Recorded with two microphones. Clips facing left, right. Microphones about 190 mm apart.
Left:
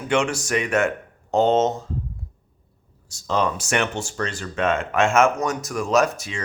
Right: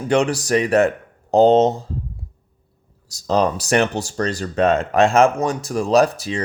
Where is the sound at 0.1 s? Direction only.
35° right (ahead or behind).